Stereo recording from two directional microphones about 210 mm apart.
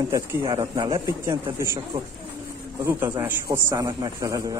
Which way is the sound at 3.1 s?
15° right (ahead or behind).